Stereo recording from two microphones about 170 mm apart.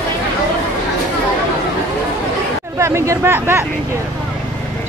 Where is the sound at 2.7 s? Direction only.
15° right (ahead or behind).